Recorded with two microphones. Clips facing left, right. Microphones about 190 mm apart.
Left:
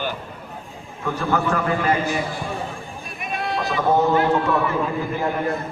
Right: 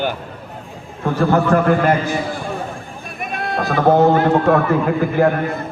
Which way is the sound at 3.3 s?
55° right (ahead or behind).